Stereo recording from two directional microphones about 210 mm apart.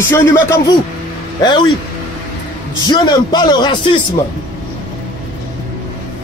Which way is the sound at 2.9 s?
20° left (ahead or behind).